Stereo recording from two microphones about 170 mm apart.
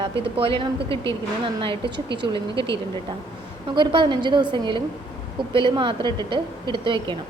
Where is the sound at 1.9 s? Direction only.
90° right.